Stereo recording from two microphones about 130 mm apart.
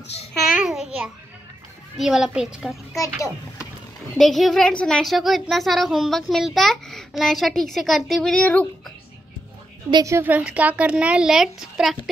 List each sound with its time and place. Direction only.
0.3 s babbling: 5° right (ahead or behind)
2.0 s speech: 5° right (ahead or behind)
3.0 s a child's voice: 25° left (ahead or behind)
4.2 s speech: centre (ahead or behind)
10.0 s a woman's voice: 15° right (ahead or behind)